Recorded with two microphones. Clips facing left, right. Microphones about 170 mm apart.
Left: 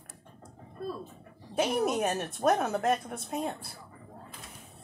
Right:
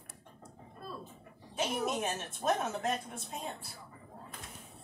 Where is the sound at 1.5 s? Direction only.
55° left (ahead or behind).